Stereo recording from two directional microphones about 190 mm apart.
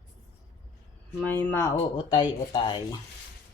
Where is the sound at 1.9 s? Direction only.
25° left (ahead or behind).